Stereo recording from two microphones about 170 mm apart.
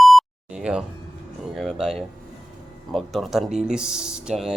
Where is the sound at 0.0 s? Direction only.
Centre (ahead or behind).